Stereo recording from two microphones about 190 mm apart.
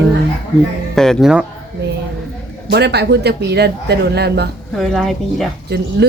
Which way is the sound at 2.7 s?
60° right (ahead or behind).